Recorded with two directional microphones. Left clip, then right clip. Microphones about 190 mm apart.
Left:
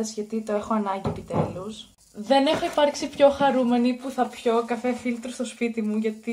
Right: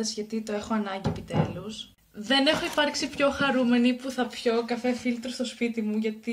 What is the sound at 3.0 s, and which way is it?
Speech, 55° right (ahead or behind).